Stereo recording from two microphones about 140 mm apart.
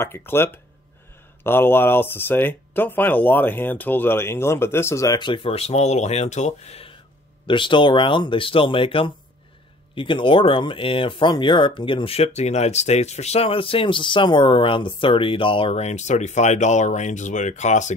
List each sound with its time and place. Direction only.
0.0 s speech: 15° left (ahead or behind); by 17.9 s 60° left (ahead or behind)